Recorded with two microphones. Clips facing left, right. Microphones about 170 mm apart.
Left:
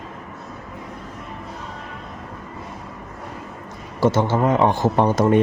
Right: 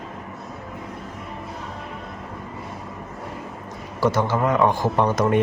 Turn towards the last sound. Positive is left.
turn(degrees=30)  # may be behind; listen again after turning